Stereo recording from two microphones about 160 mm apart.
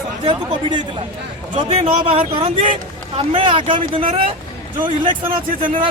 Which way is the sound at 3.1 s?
35° right (ahead or behind).